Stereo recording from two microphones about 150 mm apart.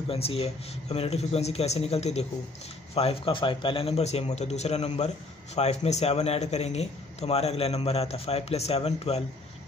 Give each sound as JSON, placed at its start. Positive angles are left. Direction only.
{"t": 0.1, "sound": "a man's voice", "side_deg": 40}